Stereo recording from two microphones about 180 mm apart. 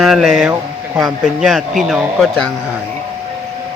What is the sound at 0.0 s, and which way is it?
Speech, centre (ahead or behind).